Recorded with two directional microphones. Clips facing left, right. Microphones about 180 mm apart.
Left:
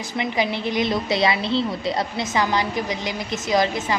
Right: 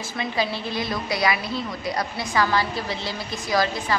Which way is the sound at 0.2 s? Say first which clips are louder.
Left 3 dB; 20° left (ahead or behind).